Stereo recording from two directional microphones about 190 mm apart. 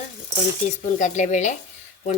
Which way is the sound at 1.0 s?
40° left (ahead or behind).